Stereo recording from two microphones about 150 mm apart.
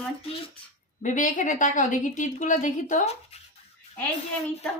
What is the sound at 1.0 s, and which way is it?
A woman's voice, 55° left (ahead or behind).